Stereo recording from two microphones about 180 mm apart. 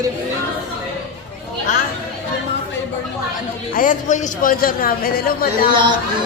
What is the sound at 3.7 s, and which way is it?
Speech, 50° left (ahead or behind).